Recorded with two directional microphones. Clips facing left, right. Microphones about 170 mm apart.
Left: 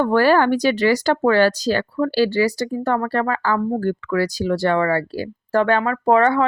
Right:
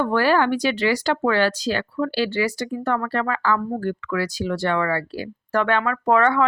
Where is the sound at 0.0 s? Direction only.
40° left (ahead or behind).